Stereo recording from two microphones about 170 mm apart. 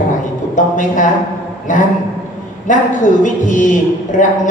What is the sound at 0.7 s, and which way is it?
Speech, 50° left (ahead or behind).